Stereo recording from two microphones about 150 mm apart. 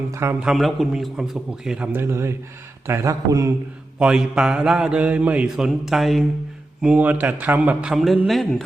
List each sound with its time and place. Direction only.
0.1 s speech: 15° right (ahead or behind)
0.4 s speech: centre (ahead or behind)
1.9 s speech: 15° right (ahead or behind)
4.0 s speech: 5° right (ahead or behind)